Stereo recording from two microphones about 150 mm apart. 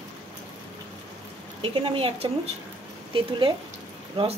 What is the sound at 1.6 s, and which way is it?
A woman's voice, 35° right (ahead or behind).